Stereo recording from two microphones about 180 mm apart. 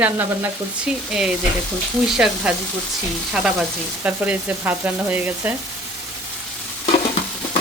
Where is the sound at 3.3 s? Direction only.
5° right (ahead or behind).